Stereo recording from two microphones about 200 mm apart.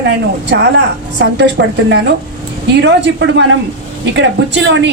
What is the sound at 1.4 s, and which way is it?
Speech, 60° right (ahead or behind).